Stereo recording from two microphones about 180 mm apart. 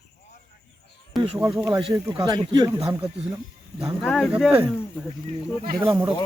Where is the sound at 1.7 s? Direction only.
25° right (ahead or behind).